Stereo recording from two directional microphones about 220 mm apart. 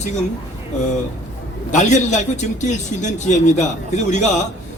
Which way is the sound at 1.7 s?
35° left (ahead or behind).